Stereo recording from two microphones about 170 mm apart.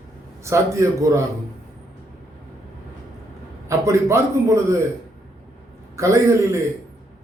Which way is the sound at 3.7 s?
15° right (ahead or behind).